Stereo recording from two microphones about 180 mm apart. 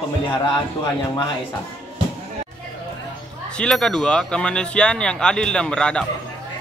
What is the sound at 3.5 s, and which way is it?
Speech, 5° left (ahead or behind).